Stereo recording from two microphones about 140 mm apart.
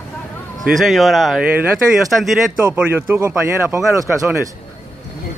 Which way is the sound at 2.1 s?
Centre (ahead or behind).